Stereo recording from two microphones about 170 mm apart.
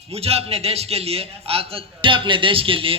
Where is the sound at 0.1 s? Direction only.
35° right (ahead or behind).